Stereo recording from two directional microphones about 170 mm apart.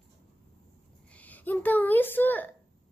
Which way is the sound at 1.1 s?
10° left (ahead or behind).